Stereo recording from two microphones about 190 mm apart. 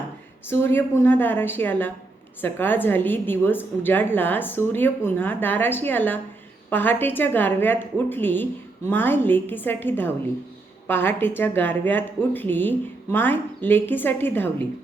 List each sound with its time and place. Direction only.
0.4 s a woman's voice: 10° left (ahead or behind)